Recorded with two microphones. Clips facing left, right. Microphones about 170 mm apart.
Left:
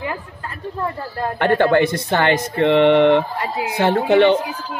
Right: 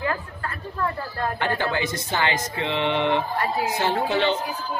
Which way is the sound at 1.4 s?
60° left (ahead or behind).